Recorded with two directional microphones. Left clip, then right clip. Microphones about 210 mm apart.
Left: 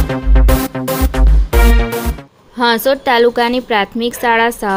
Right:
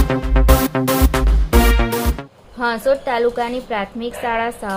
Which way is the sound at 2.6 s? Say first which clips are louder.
Left 5 dB; 45° left (ahead or behind).